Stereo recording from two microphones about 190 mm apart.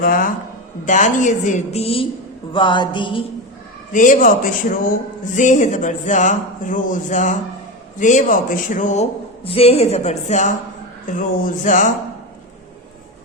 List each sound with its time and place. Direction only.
0.0 s a woman's voice: 45° left (ahead or behind); by 2.0 s 30° left (ahead or behind)
2.5 s music: 25° left (ahead or behind)
3.9 s a woman's voice: 40° left (ahead or behind)